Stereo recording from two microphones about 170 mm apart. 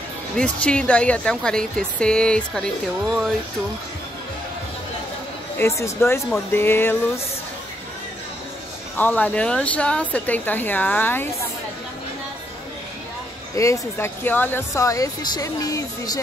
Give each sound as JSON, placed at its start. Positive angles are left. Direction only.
{"t": 0.4, "sound": "speech", "side_deg": 5}
{"t": 5.6, "sound": "speech", "side_deg": 15}
{"t": 8.9, "sound": "speech", "side_deg": 10}
{"t": 13.6, "sound": "speech", "side_deg": 15}